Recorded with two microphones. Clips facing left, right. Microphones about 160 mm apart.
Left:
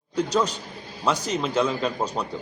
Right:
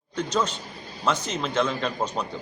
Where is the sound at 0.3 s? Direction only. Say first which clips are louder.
Left 2 dB; 10° left (ahead or behind).